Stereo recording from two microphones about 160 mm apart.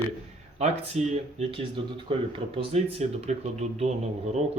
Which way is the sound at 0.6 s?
40° right (ahead or behind).